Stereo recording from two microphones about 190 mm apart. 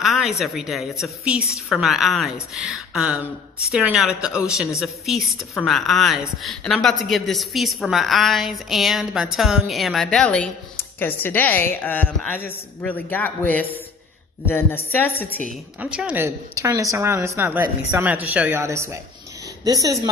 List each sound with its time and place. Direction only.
0.0 s a woman's voice: centre (ahead or behind)
15.8 s a woman's voice: 5° right (ahead or behind)
16.5 s a woman's voice: 15° right (ahead or behind)